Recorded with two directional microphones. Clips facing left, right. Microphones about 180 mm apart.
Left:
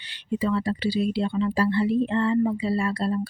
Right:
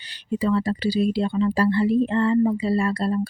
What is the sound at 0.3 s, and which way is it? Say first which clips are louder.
Speech: right 3 dB; 40° right (ahead or behind).